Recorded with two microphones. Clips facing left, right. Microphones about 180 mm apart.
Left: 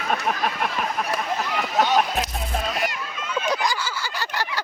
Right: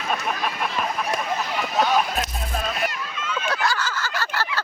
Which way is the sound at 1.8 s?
20° left (ahead or behind).